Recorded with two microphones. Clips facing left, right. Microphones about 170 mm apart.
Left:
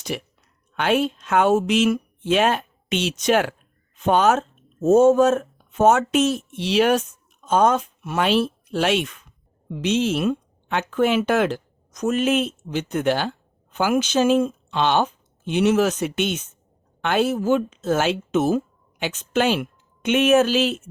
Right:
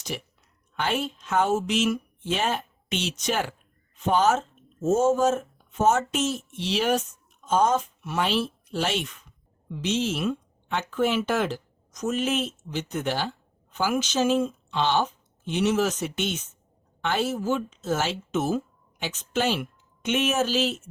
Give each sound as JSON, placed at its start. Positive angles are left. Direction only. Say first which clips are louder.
{"t": 0.1, "sound": "speech", "louder": "left 5 dB", "side_deg": 65}